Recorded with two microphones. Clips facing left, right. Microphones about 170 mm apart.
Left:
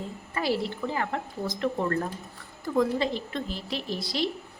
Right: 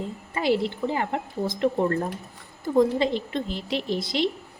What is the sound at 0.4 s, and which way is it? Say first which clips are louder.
Speech: right 4 dB; 25° right (ahead or behind).